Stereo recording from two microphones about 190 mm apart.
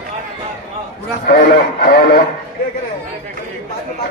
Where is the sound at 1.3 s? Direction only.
50° left (ahead or behind).